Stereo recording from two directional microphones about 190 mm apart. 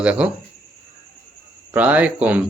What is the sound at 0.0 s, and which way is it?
Speech, 5° right (ahead or behind).